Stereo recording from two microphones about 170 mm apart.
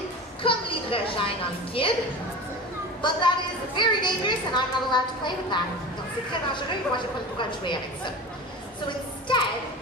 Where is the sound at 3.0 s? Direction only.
25° left (ahead or behind).